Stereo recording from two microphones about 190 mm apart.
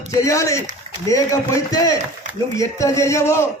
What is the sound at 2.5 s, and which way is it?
Speech, 15° left (ahead or behind).